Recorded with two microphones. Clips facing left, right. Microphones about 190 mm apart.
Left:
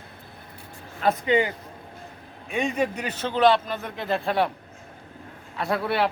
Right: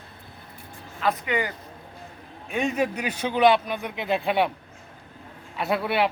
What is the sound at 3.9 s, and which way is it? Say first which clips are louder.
Speech: right 1 dB; centre (ahead or behind).